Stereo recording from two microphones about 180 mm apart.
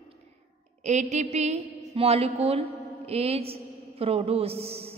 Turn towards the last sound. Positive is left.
turn(degrees=-35)  # may be behind; listen again after turning